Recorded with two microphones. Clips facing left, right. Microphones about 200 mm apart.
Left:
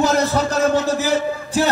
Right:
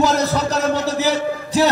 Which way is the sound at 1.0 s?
50° left (ahead or behind).